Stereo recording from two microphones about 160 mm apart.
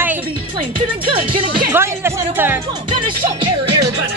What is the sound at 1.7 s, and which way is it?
Music, 15° right (ahead or behind).